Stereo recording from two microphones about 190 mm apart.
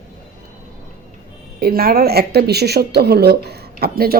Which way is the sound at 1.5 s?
55° right (ahead or behind).